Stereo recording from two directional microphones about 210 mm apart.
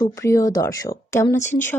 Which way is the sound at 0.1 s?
15° left (ahead or behind).